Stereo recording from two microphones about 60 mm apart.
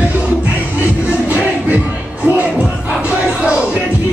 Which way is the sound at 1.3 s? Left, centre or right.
Right.